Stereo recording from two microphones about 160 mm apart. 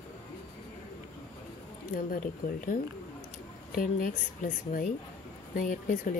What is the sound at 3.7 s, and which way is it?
Speech, 60° left (ahead or behind).